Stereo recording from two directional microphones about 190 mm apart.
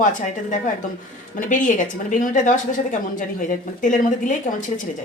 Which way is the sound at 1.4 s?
45° left (ahead or behind).